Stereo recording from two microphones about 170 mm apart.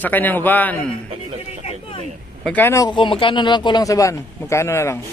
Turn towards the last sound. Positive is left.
turn(degrees=15)  # may be behind; listen again after turning